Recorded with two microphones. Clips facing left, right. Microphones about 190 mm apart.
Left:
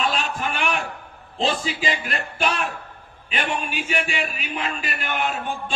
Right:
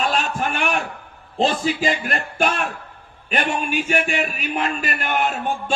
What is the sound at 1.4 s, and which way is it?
A man's voice, 45° right (ahead or behind).